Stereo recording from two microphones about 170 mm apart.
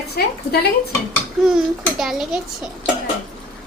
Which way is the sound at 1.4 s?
Centre (ahead or behind).